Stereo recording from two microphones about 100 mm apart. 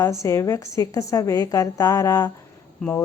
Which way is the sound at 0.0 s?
30° left (ahead or behind).